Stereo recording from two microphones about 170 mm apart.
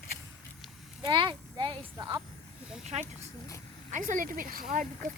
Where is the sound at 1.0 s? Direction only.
30° right (ahead or behind).